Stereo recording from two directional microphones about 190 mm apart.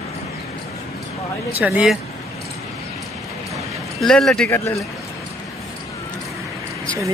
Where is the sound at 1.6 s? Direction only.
5° right (ahead or behind).